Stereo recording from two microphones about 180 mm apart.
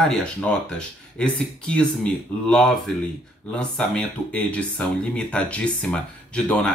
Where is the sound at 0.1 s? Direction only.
5° left (ahead or behind).